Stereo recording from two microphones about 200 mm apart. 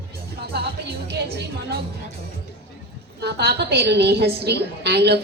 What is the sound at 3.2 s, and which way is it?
A woman's voice, 55° right (ahead or behind).